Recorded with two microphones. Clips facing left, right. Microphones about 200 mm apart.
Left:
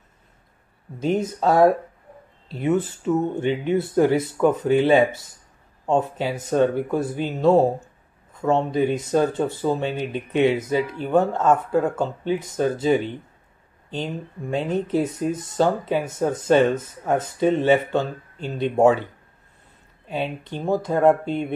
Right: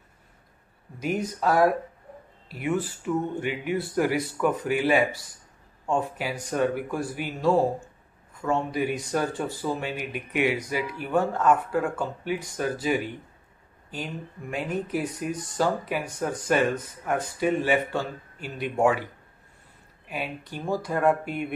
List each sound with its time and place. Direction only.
0.9 s speech: 25° left (ahead or behind)
20.1 s speech: 25° left (ahead or behind)